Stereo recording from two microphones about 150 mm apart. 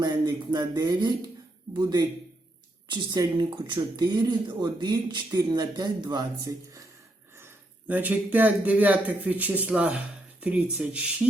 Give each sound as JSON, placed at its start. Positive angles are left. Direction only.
{"t": 0.0, "sound": "speech", "side_deg": -25}
{"t": 2.8, "sound": "speech", "side_deg": -30}
{"t": 7.3, "sound": "speech", "side_deg": -15}